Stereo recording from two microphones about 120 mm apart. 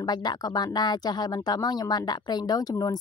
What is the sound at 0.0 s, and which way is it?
Speech, 35° left (ahead or behind).